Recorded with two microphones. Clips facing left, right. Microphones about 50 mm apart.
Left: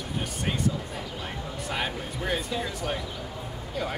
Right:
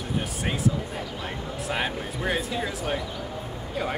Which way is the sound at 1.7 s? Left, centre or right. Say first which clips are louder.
Right 2 dB; centre.